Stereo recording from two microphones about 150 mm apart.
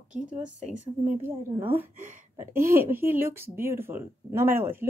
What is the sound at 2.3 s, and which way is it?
Speech, 15° right (ahead or behind).